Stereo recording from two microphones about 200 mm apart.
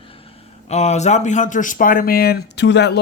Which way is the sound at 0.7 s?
35° left (ahead or behind).